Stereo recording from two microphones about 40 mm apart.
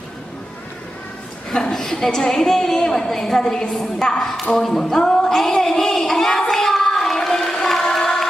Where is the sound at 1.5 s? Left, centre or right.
Centre.